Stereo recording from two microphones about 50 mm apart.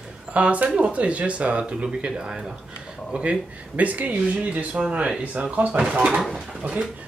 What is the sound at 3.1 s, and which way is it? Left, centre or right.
Speech, right.